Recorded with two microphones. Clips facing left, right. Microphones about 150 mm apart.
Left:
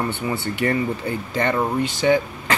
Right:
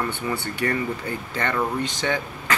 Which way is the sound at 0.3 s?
20° left (ahead or behind).